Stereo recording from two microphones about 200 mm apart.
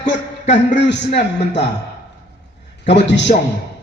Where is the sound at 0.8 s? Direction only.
60° left (ahead or behind).